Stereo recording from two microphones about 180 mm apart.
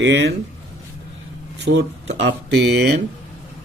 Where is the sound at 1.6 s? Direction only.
70° right (ahead or behind).